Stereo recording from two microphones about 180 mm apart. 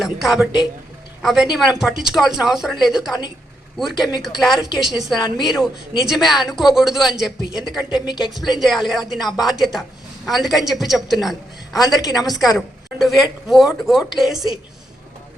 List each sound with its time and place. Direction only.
0.0 s speech: centre (ahead or behind)
11.9 s a woman's voice: 20° left (ahead or behind)
12.2 s speech: centre (ahead or behind)